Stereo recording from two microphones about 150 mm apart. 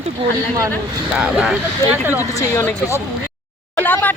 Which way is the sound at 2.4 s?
20° left (ahead or behind).